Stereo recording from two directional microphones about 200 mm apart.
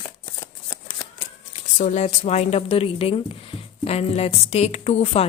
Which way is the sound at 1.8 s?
35° left (ahead or behind).